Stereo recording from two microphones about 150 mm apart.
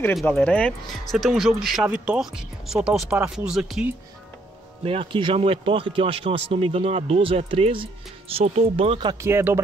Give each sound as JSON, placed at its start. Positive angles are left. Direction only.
{"t": 0.1, "sound": "speech", "side_deg": 0}
{"t": 1.1, "sound": "speech", "side_deg": 0}
{"t": 4.8, "sound": "speech", "side_deg": -35}
{"t": 9.2, "sound": "speech", "side_deg": -20}